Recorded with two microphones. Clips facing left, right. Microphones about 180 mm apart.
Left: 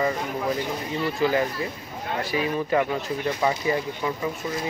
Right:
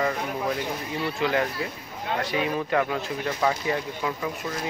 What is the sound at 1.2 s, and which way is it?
Speech, 5° left (ahead or behind).